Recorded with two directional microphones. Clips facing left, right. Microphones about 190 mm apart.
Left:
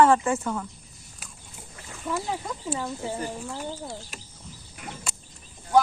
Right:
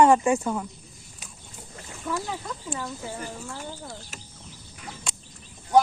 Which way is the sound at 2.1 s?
10° left (ahead or behind).